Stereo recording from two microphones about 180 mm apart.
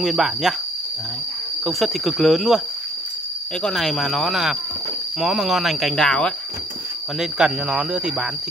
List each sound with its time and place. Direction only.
0.0 s speech: centre (ahead or behind)
1.6 s speech: centre (ahead or behind)
3.6 s speech: centre (ahead or behind)